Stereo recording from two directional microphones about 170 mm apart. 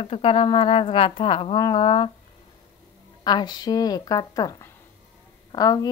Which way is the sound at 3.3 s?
25° left (ahead or behind).